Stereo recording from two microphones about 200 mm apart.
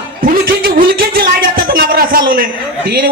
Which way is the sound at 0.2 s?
50° right (ahead or behind).